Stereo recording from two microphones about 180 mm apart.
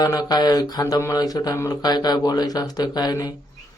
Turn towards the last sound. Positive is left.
turn(degrees=20)  # may be behind; listen again after turning